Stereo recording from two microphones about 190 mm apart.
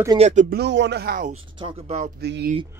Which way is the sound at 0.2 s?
40° right (ahead or behind).